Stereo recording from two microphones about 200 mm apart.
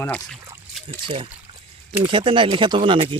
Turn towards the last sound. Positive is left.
turn(degrees=-25)  # may be behind; listen again after turning